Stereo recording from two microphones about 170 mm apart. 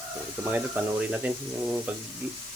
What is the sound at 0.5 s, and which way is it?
Speech, 10° right (ahead or behind).